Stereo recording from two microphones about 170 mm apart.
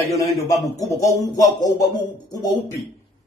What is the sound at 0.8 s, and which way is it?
Speech, 20° left (ahead or behind).